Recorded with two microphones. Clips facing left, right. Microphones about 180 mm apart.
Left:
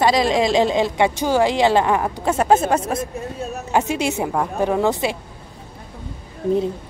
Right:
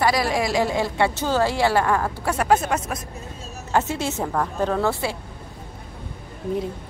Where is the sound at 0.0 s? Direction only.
20° left (ahead or behind).